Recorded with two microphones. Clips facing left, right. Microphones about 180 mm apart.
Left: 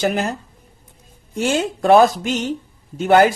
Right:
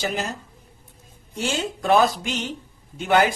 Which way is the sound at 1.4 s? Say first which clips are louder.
Left 7 dB; 50° left (ahead or behind).